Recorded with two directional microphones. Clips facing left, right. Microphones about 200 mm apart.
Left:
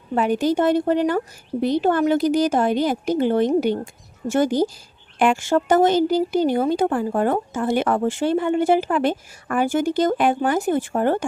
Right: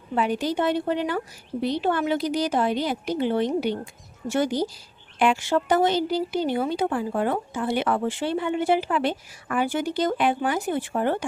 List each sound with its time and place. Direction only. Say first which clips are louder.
0.1 s a woman's voice: left 5 dB; 45° left (ahead or behind)